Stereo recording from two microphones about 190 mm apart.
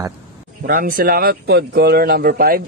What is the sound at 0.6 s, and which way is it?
Speech, 50° right (ahead or behind).